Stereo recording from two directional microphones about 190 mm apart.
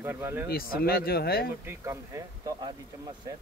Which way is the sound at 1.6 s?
15° right (ahead or behind).